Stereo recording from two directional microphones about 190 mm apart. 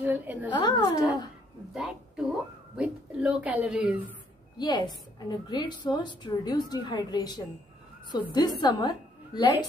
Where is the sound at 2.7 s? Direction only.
5° right (ahead or behind).